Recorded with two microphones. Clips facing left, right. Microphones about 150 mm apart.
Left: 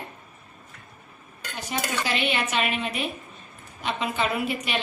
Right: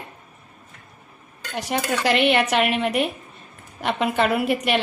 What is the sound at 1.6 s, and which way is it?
A woman's voice, 75° right (ahead or behind).